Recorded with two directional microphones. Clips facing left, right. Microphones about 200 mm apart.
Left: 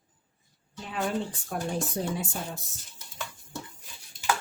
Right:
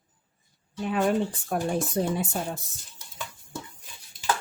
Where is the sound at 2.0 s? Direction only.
55° right (ahead or behind).